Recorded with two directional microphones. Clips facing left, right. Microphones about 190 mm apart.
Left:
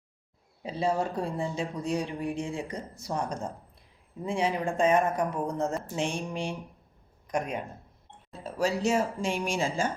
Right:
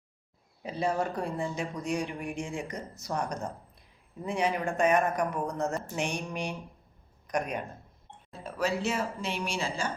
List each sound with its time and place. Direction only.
0.6 s speech: 30° left (ahead or behind)
8.4 s speech: 40° left (ahead or behind)